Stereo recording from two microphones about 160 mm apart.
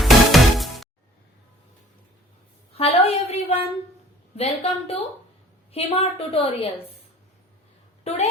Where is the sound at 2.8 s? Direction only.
40° left (ahead or behind).